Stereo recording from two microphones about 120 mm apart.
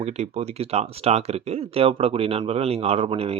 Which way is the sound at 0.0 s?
65° right (ahead or behind).